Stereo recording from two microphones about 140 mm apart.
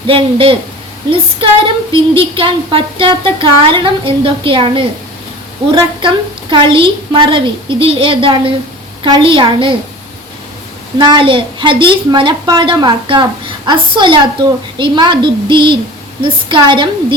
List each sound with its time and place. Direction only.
0.1 s speech: 40° right (ahead or behind)
6.5 s speech: 40° right (ahead or behind)
10.9 s speech: 30° right (ahead or behind)